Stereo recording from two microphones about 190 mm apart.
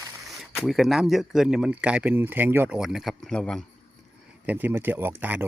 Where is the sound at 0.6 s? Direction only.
Centre (ahead or behind).